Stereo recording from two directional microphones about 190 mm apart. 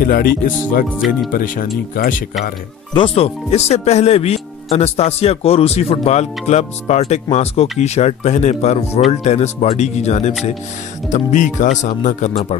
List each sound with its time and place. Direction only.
0.0 s speech: 50° left (ahead or behind)
0.8 s speech: centre (ahead or behind)
1.3 s speech: 45° left (ahead or behind)
2.9 s speech: 30° left (ahead or behind)